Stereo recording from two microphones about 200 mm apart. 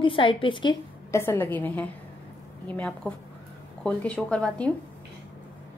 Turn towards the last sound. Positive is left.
turn(degrees=5)  # may be behind; listen again after turning